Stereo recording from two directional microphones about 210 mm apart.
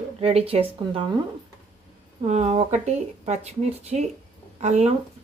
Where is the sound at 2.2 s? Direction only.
30° right (ahead or behind).